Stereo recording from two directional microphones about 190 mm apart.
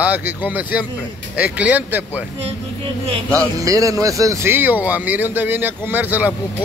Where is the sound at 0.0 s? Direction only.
10° right (ahead or behind).